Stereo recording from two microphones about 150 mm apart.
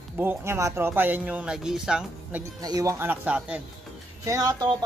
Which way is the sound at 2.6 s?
25° right (ahead or behind).